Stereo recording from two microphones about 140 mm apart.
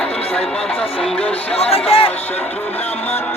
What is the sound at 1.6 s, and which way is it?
Speech, 45° left (ahead or behind).